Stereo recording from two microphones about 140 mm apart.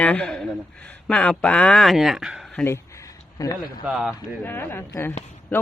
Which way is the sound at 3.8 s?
5° right (ahead or behind).